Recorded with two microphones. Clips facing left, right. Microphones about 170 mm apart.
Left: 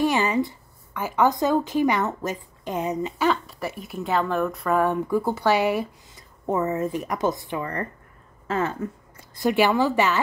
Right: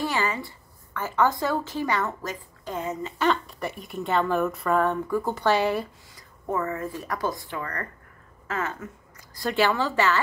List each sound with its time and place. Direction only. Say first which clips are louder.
0.0 s speech: left 6 dB; 20° left (ahead or behind)
3.3 s speech: right 1 dB; 5° left (ahead or behind)
4.7 s speech: left 3 dB; 10° left (ahead or behind)
6.1 s a woman's voice: left 4 dB; 20° left (ahead or behind)
9.5 s speech: left 4 dB; 15° left (ahead or behind)